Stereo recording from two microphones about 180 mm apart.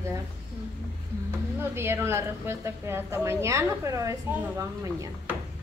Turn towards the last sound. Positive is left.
turn(degrees=-15)  # may be behind; listen again after turning